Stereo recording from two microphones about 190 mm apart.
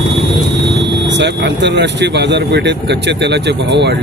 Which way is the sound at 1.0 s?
65° right (ahead or behind).